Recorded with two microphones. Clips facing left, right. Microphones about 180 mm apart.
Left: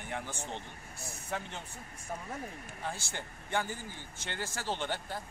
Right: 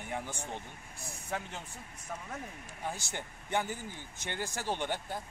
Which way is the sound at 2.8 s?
15° right (ahead or behind).